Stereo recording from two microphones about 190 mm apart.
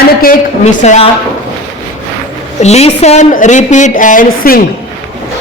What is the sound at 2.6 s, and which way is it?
A woman's voice, 35° left (ahead or behind).